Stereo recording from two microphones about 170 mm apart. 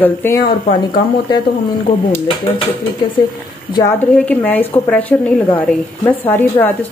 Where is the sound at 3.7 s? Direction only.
20° left (ahead or behind).